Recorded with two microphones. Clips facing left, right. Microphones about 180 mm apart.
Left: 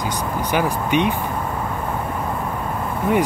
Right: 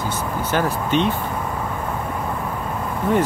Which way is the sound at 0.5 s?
15° left (ahead or behind).